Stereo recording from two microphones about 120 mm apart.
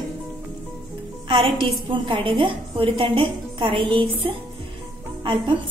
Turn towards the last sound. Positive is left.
turn(degrees=-40)  # may be behind; listen again after turning